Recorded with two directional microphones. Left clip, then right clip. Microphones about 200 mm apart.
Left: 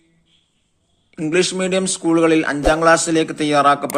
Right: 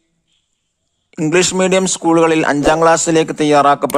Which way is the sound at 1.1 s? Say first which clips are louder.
Right 4 dB; 55° right (ahead or behind).